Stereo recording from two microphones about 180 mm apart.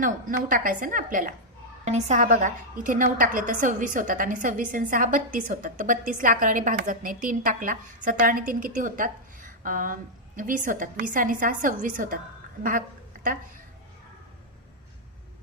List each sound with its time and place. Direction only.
0.0 s a woman's voice: 45° right (ahead or behind)